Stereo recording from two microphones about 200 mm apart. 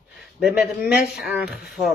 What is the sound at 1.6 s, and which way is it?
Speech, centre (ahead or behind).